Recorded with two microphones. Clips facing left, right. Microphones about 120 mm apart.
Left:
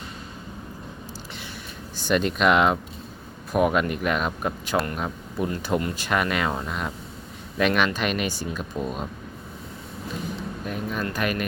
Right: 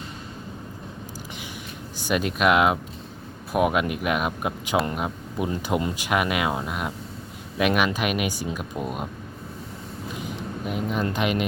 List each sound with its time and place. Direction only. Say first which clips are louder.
2.0 s speech: left 1 dB; 10° right (ahead or behind)
10.7 s speech: right 3 dB; 20° right (ahead or behind)